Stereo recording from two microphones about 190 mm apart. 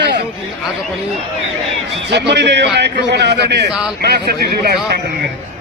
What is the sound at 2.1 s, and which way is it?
A man's voice, 65° right (ahead or behind).